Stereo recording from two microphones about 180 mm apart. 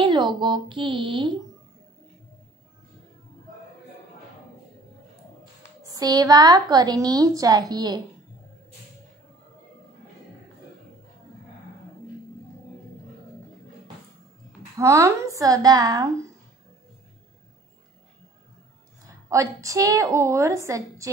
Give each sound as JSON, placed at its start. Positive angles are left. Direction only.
{"t": 0.0, "sound": "speech", "side_deg": -25}
{"t": 5.4, "sound": "a woman's voice", "side_deg": -20}
{"t": 14.8, "sound": "a woman's voice", "side_deg": -15}
{"t": 19.2, "sound": "a woman's voice", "side_deg": -15}